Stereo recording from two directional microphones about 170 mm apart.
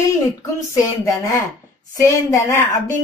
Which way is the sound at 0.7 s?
20° left (ahead or behind).